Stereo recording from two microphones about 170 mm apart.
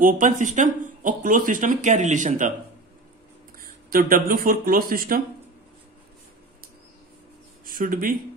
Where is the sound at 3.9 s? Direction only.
55° right (ahead or behind).